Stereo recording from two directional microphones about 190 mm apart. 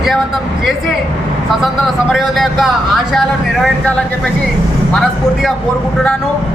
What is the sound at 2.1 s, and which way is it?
A man's voice, centre (ahead or behind).